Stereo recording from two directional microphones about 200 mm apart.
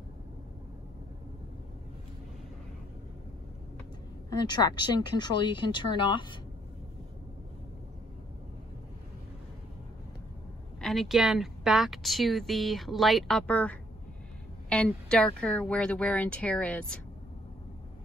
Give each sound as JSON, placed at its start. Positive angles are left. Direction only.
{"t": 4.3, "sound": "speech", "side_deg": 20}
{"t": 10.8, "sound": "a woman's voice", "side_deg": 0}